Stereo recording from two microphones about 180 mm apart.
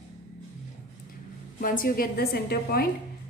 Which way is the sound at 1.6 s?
50° left (ahead or behind).